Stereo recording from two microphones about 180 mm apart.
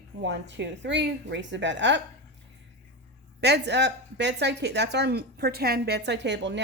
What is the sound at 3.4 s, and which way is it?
Speech, 70° right (ahead or behind).